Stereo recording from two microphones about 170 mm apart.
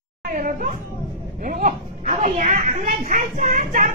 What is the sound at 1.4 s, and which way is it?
Speech, 50° right (ahead or behind).